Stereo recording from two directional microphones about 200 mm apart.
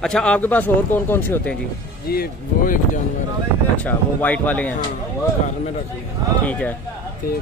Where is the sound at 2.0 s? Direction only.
45° left (ahead or behind).